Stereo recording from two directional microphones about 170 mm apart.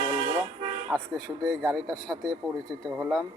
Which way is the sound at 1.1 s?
5° left (ahead or behind).